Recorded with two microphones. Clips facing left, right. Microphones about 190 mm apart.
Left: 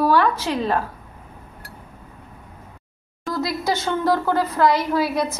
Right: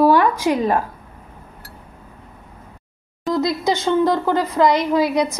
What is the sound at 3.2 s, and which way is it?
A woman's voice, 20° right (ahead or behind).